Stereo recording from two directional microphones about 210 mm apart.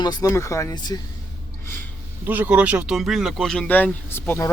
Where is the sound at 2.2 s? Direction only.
10° right (ahead or behind).